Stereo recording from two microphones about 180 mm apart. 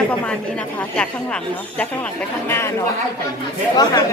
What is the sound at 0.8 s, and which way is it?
Speech, 5° left (ahead or behind).